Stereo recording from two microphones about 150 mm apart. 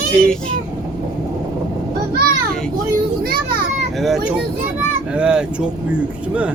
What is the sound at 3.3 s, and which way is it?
Speech, 85° right.